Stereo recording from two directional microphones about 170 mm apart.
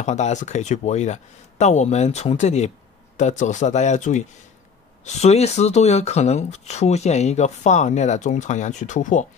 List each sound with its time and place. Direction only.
0.0 s speech: 45° left (ahead or behind)